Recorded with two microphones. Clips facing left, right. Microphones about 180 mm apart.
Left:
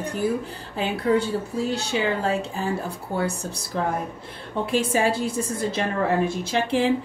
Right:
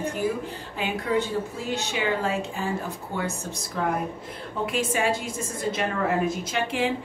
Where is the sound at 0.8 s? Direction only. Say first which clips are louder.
Left 4 dB; 35° left (ahead or behind).